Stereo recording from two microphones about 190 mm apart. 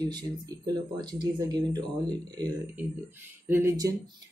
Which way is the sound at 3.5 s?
15° right (ahead or behind).